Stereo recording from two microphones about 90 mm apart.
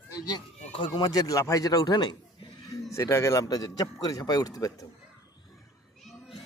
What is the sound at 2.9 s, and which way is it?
A man's voice, 35° left (ahead or behind).